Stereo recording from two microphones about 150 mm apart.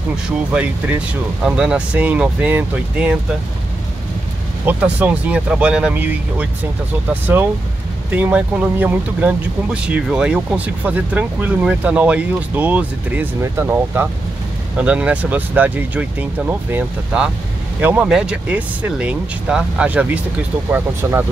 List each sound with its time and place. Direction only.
0.1 s speech: 10° right (ahead or behind)
4.6 s speech: 10° right (ahead or behind)